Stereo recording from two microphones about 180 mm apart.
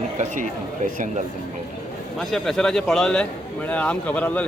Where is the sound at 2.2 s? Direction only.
Centre (ahead or behind).